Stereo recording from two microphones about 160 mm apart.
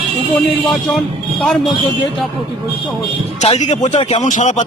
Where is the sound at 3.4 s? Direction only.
45° left (ahead or behind).